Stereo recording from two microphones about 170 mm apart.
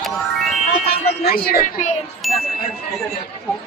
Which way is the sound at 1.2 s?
65° left (ahead or behind).